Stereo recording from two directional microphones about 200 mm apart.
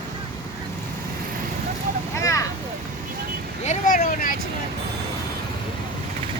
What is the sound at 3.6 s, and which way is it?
Vehicle, 40° left (ahead or behind).